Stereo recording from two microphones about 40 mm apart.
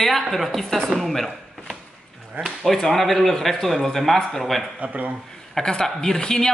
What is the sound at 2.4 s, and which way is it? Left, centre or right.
Speech, right.